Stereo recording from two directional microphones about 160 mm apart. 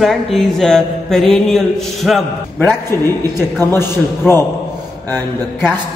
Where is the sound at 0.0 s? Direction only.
Centre (ahead or behind).